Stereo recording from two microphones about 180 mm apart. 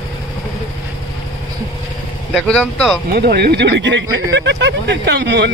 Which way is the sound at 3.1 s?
60° right (ahead or behind).